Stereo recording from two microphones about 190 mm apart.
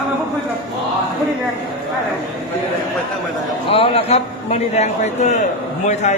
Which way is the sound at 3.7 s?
30° left (ahead or behind).